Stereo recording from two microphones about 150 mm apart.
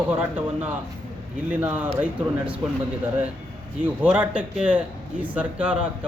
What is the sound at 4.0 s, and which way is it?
A man's voice, 10° right (ahead or behind).